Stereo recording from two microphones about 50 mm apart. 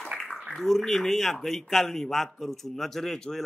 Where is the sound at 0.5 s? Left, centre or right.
Centre.